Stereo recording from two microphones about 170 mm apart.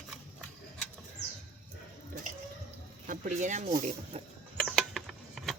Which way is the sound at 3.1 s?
50° right (ahead or behind).